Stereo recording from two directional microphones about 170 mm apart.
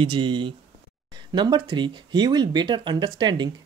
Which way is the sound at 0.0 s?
30° right (ahead or behind).